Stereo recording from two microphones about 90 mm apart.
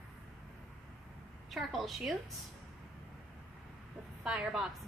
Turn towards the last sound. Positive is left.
turn(degrees=-10)  # may be behind; listen again after turning